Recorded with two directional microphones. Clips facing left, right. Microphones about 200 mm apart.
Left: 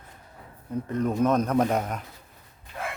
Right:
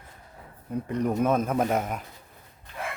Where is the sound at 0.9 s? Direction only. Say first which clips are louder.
Left 1 dB; 15° right (ahead or behind).